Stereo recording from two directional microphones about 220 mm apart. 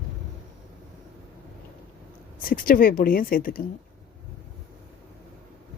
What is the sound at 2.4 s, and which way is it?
A woman's voice, 40° left (ahead or behind).